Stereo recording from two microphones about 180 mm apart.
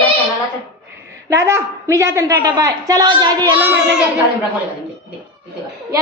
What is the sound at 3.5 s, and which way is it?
Speech, 10° right (ahead or behind).